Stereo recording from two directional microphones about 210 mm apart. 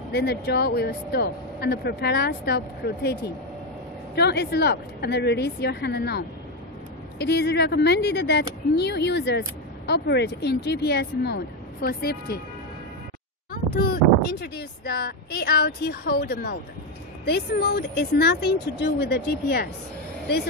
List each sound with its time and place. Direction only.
0.1 s speech: 50° left (ahead or behind)
13.5 s speech: 50° left (ahead or behind)